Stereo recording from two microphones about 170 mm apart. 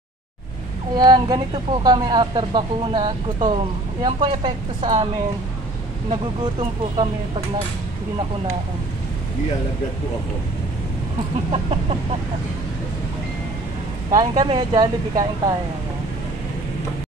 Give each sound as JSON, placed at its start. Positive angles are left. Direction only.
{"t": 0.9, "sound": "speech", "side_deg": -25}
{"t": 11.5, "sound": "chicken", "side_deg": -35}
{"t": 14.1, "sound": "speech", "side_deg": -25}